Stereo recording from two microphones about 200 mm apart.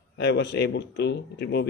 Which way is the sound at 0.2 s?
55° left (ahead or behind).